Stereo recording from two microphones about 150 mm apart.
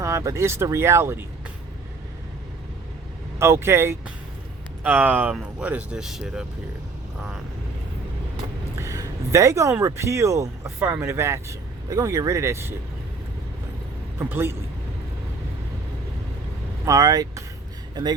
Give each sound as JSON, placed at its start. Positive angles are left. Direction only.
{"t": 0.0, "sound": "speech", "side_deg": -20}
{"t": 3.3, "sound": "speech", "side_deg": -15}
{"t": 8.8, "sound": "speech", "side_deg": -20}
{"t": 14.2, "sound": "speech", "side_deg": -15}
{"t": 16.8, "sound": "speech", "side_deg": -25}